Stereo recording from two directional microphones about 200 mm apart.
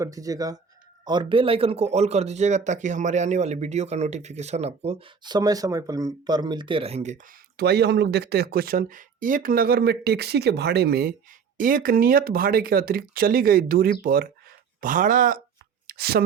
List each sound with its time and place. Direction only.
0.0 s speech: 15° right (ahead or behind); by 7.3 s 35° right (ahead or behind)
7.5 s speech: 55° right (ahead or behind)